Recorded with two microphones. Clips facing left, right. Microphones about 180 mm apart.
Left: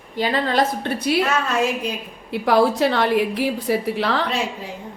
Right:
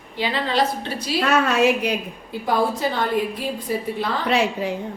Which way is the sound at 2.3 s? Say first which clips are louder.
Left 5 dB; 75° left (ahead or behind).